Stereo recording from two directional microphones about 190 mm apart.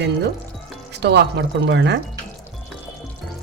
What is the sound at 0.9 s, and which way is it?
Speech, 60° right (ahead or behind).